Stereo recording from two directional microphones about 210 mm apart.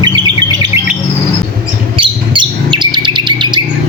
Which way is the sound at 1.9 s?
25° right (ahead or behind).